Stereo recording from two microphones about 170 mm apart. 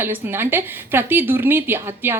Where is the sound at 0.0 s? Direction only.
15° right (ahead or behind).